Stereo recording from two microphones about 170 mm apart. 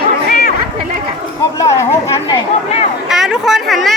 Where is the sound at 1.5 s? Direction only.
15° left (ahead or behind).